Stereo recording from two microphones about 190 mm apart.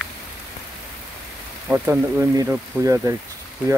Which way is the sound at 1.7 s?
10° right (ahead or behind).